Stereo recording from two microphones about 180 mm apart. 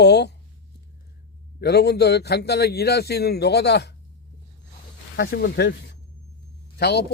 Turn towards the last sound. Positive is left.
turn(degrees=65)  # may be behind; listen again after turning